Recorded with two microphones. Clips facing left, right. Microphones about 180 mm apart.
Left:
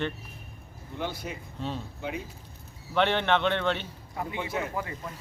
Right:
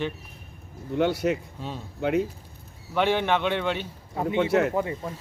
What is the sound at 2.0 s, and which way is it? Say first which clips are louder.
Speech: right 15 dB; 65° right (ahead or behind).